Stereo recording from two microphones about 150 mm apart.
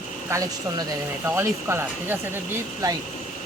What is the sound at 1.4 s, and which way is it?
Speech, 15° right (ahead or behind).